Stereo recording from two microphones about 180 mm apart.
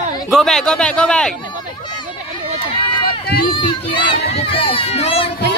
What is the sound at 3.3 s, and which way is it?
Speech, 60° left (ahead or behind).